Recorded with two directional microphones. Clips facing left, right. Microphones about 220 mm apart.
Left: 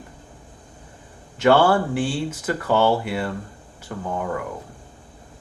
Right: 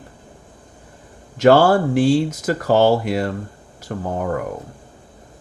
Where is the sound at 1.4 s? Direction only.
40° right (ahead or behind).